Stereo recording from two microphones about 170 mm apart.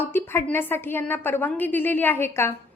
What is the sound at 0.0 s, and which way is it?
A woman's voice, 15° left (ahead or behind).